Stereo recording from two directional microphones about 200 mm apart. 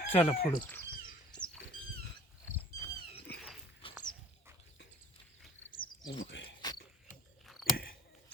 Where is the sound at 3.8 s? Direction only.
25° left (ahead or behind).